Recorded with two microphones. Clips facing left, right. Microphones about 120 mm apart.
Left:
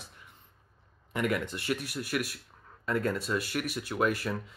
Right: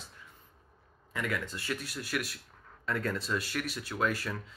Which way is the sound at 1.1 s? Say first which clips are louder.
Left 5 dB; 20° left (ahead or behind).